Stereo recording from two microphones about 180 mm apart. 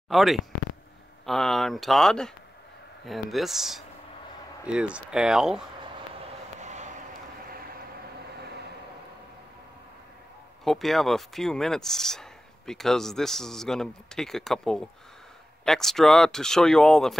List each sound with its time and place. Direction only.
0.1 s speech: centre (ahead or behind)
6.6 s a sound: 40° right (ahead or behind)
10.6 s speech: centre (ahead or behind)